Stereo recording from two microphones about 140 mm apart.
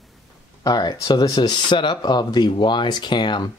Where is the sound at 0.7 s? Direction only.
30° left (ahead or behind).